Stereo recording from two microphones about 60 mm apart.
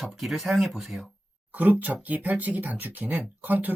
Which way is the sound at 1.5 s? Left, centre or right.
Right.